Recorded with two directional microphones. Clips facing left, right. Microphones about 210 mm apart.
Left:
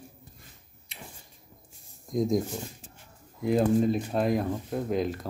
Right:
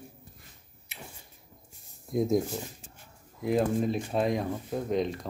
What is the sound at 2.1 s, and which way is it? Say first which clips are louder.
Speech: even; 5° right (ahead or behind).